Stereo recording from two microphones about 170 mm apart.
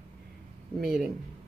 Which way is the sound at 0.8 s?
5° right (ahead or behind).